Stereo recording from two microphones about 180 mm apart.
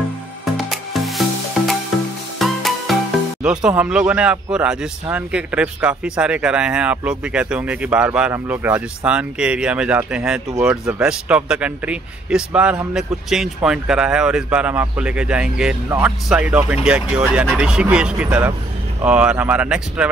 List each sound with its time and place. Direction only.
0.7 s music: centre (ahead or behind)
2.3 s music: centre (ahead or behind)
3.4 s speech: 5° right (ahead or behind)
15.9 s speech: 15° right (ahead or behind)
16.3 s speech: 5° right (ahead or behind)